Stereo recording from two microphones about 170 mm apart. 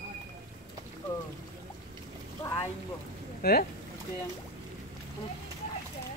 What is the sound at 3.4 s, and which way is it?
Speech, 60° left (ahead or behind).